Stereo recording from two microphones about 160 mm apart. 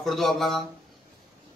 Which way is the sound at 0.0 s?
Centre (ahead or behind).